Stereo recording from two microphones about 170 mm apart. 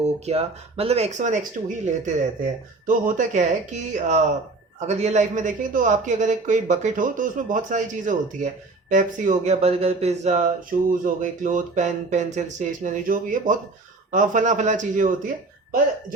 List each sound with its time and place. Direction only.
0.0 s speech: 40° right (ahead or behind)